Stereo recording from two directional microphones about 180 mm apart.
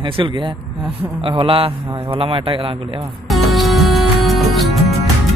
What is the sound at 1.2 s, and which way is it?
A man's voice, 30° right (ahead or behind).